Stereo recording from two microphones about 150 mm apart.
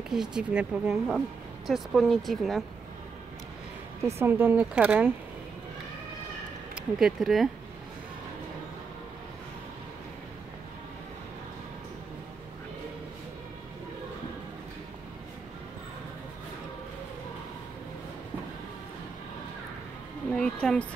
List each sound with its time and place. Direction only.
0.1 s speech: 5° right (ahead or behind)
4.2 s speech: 15° right (ahead or behind)
6.7 s speech: 5° right (ahead or behind)
20.3 s a sound: 5° left (ahead or behind)